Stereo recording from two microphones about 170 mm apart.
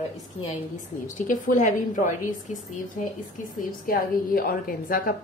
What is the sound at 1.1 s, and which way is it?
A woman's voice, 50° left (ahead or behind).